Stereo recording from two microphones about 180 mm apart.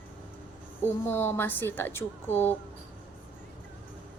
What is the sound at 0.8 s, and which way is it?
A woman's voice, 10° left (ahead or behind).